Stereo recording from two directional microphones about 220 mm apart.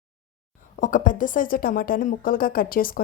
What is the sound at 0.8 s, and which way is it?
A woman's voice, 35° left (ahead or behind).